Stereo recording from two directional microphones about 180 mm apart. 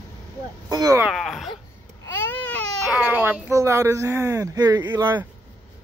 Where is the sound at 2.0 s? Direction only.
10° left (ahead or behind).